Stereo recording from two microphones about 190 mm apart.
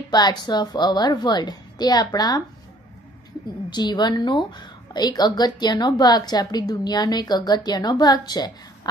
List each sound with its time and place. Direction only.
0.1 s a woman's voice: 20° left (ahead or behind)
3.7 s a woman's voice: 20° left (ahead or behind)